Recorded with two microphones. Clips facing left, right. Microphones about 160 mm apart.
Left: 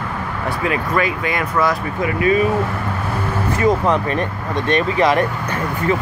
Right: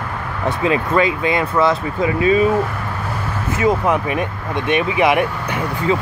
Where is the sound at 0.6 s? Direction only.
25° right (ahead or behind).